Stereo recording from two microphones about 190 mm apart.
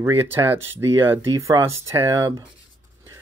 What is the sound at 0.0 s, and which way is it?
Speech, 10° right (ahead or behind).